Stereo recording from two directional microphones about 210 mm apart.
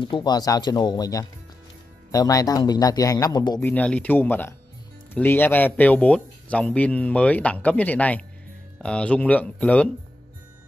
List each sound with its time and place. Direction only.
0.0 s speech: 20° left (ahead or behind)
3.6 s speech: 5° left (ahead or behind)